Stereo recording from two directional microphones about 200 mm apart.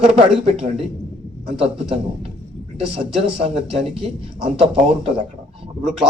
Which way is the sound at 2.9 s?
30° right (ahead or behind).